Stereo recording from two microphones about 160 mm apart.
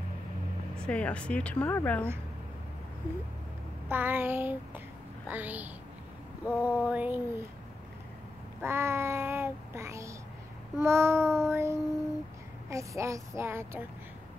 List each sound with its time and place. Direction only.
0.7 s speech: 5° left (ahead or behind)
3.9 s child singing: 10° right (ahead or behind)
6.4 s speech: 10° left (ahead or behind)
6.9 s child singing: 10° right (ahead or behind)
8.5 s child singing: 15° right (ahead or behind)
12.6 s a woman's voice: 20° right (ahead or behind)